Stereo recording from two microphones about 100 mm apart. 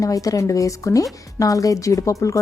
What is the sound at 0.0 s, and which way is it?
A woman's voice, 35° left (ahead or behind).